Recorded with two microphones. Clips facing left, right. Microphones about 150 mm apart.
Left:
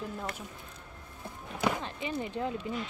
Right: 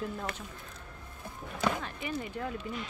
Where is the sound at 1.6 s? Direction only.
15° left (ahead or behind).